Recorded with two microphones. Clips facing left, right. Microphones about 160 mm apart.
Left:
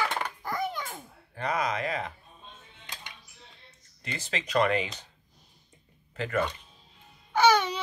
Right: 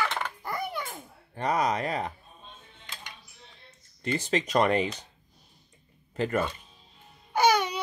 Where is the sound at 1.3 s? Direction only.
35° right (ahead or behind).